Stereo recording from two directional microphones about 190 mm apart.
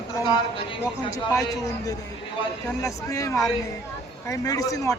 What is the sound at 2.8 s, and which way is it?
A man's voice, 15° left (ahead or behind).